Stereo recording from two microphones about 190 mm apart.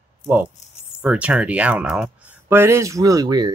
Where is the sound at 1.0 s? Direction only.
5° right (ahead or behind).